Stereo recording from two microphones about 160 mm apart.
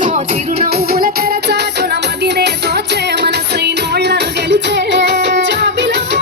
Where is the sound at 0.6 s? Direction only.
70° right (ahead or behind).